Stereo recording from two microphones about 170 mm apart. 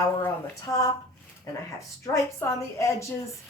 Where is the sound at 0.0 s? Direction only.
15° left (ahead or behind).